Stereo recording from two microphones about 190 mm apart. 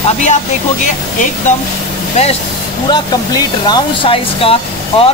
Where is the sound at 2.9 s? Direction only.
20° left (ahead or behind).